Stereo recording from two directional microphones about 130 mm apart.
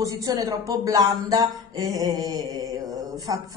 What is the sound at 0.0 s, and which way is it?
Speech, 25° right (ahead or behind).